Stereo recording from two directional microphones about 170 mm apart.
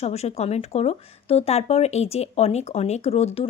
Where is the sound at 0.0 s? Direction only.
40° left (ahead or behind).